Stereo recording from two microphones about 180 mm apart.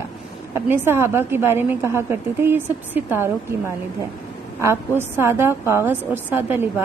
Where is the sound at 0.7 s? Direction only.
15° right (ahead or behind).